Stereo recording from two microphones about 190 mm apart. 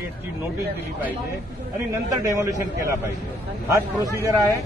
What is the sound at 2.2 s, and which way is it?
A man's voice, 15° right (ahead or behind).